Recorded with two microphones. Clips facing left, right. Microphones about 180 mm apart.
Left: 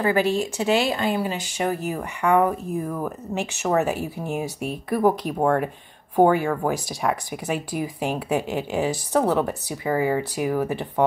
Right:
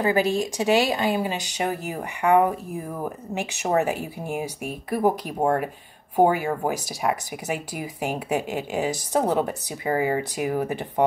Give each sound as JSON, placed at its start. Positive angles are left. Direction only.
{"t": 0.0, "sound": "speech", "side_deg": -15}
{"t": 6.1, "sound": "speech", "side_deg": -10}